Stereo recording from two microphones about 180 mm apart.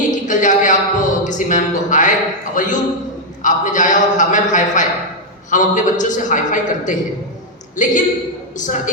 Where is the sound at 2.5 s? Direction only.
45° left (ahead or behind).